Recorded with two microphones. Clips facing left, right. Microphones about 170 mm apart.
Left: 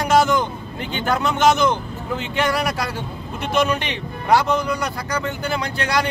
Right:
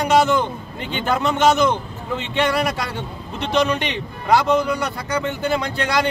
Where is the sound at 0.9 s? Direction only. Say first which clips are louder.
Right 1 dB; centre (ahead or behind).